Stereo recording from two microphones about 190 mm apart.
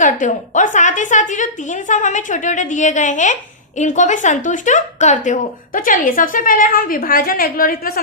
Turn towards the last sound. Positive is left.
turn(degrees=50)  # may be behind; listen again after turning